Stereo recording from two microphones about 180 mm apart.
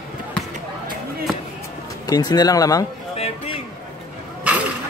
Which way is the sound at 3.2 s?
30° left (ahead or behind).